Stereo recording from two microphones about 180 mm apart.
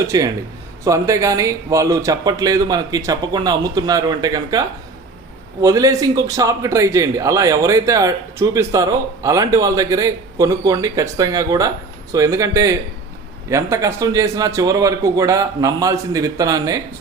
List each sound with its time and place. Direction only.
0.1 s a man's voice: 20° right (ahead or behind)
5.6 s a man's voice: 20° right (ahead or behind)